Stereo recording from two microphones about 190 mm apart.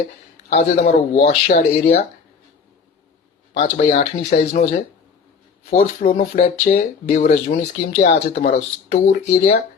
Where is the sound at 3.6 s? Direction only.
40° left (ahead or behind).